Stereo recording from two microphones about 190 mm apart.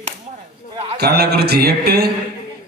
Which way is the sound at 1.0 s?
55° right (ahead or behind).